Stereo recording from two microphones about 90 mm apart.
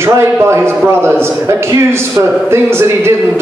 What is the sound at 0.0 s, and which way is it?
A man's voice, 30° right (ahead or behind).